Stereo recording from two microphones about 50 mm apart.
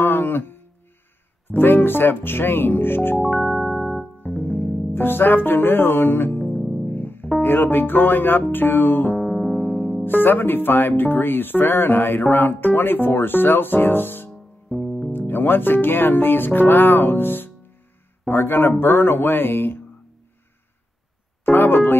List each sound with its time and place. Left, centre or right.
0.0 s a sound: left
1.5 s speech: left
3.2 s music: centre
3.5 s electric piano: centre
4.0 s music: left
4.9 s speech: left
6.3 s music: left
6.6 s music: centre
6.9 s music: left
10.0 s speech: left
14.7 s music: centre
15.1 s speech: left
21.5 s music: left